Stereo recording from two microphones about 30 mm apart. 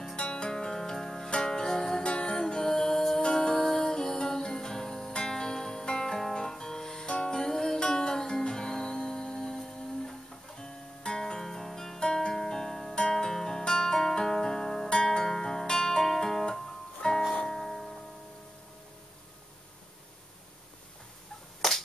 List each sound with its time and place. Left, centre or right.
0.1 s music: left
0.5 s music: centre
2.0 s music: left
2.5 s music: left
6.1 s music: centre
7.1 s music: left
17.0 s music: left
17.5 s music: centre
21.6 s finger snapping: centre